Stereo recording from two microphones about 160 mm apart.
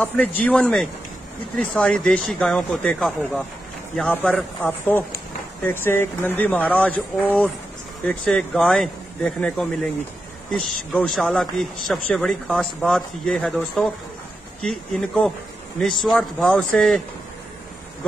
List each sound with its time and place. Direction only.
0.0 s speech: 10° left (ahead or behind)